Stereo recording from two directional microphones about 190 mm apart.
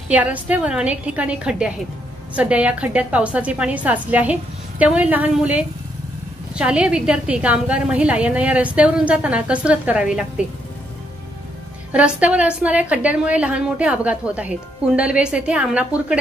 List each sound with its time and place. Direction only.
0.1 s a woman's voice: 10° right (ahead or behind)
11.9 s a woman's voice: 5° right (ahead or behind)